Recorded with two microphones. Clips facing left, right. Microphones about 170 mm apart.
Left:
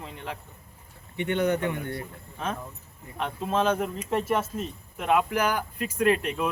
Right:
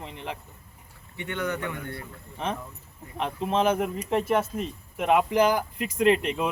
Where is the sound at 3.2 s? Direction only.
15° right (ahead or behind).